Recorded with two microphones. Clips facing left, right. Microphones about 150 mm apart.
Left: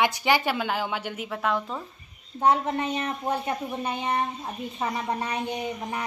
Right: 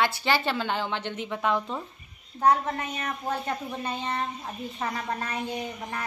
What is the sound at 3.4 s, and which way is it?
A woman's voice, 15° left (ahead or behind).